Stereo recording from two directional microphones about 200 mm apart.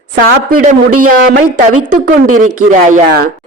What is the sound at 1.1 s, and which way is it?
Speech, 45° right (ahead or behind).